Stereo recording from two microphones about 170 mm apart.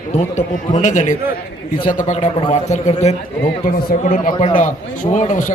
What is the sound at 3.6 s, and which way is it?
A man's voice, 55° left (ahead or behind).